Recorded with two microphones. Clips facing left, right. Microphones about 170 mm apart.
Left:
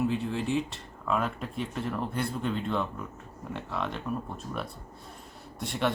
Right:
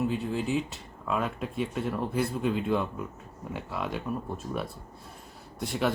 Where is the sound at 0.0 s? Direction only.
Centre (ahead or behind).